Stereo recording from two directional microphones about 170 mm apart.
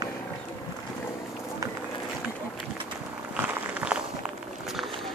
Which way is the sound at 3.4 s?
5° right (ahead or behind).